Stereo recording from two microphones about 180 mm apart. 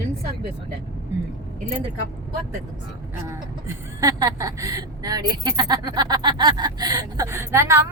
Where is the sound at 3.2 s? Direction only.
15° right (ahead or behind).